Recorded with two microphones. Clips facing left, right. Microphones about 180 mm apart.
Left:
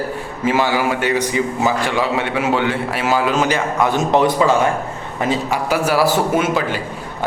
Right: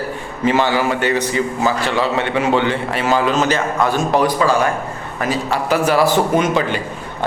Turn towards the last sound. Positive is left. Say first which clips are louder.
# right 1 dB
turn(degrees=5)  # may be behind; listen again after turning